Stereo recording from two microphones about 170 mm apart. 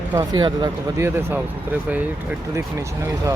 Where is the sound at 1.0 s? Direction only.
15° right (ahead or behind).